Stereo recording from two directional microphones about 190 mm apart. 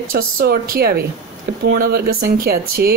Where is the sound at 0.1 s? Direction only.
50° right (ahead or behind).